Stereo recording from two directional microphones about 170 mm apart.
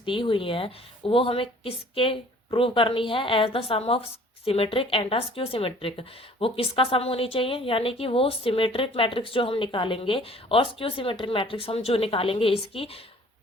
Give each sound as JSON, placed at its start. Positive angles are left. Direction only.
{"t": 0.0, "sound": "a woman's voice", "side_deg": 30}